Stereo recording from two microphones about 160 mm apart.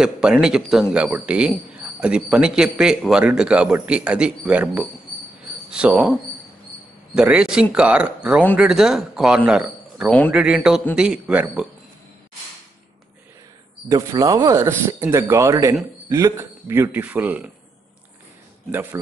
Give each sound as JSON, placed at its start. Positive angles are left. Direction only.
{"t": 0.0, "sound": "speech", "side_deg": -5}
{"t": 7.2, "sound": "speech", "side_deg": -5}
{"t": 13.8, "sound": "speech", "side_deg": -20}
{"t": 18.7, "sound": "speech", "side_deg": -10}